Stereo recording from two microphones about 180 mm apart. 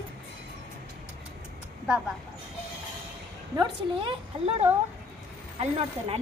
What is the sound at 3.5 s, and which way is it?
A woman's voice, 30° right (ahead or behind).